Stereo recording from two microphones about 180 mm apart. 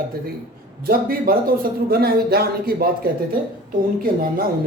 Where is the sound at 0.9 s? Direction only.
55° right (ahead or behind).